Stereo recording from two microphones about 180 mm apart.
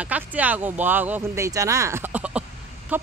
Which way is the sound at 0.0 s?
10° right (ahead or behind).